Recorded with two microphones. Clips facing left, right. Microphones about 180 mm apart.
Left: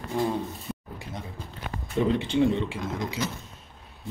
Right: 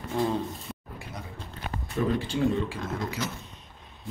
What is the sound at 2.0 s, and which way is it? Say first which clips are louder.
Speech: left 4 dB; 20° left (ahead or behind).